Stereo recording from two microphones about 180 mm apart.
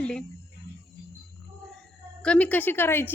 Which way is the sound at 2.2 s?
5° left (ahead or behind).